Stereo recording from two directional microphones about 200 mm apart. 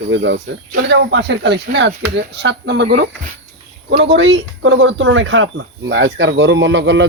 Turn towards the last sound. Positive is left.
turn(degrees=-65)  # may be behind; listen again after turning